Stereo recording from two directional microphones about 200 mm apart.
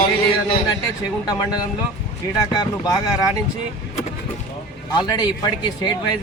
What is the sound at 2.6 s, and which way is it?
Speech, 20° left (ahead or behind).